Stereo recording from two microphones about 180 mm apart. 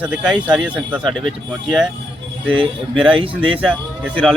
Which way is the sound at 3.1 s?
30° right (ahead or behind).